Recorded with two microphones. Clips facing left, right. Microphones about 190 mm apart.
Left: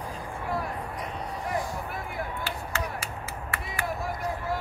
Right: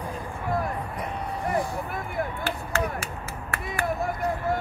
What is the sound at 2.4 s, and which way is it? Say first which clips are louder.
Chop: right 5 dB; 50° right (ahead or behind).